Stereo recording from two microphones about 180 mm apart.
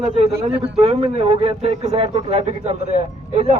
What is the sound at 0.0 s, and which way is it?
A man's voice, 35° right (ahead or behind).